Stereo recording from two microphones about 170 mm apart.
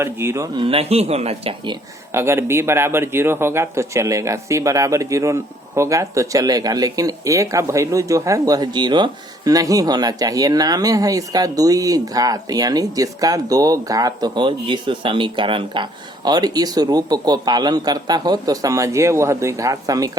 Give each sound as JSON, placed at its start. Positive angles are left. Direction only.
{"t": 0.0, "sound": "speech", "side_deg": -15}
{"t": 0.6, "sound": "speech", "side_deg": -35}
{"t": 2.1, "sound": "speech", "side_deg": -15}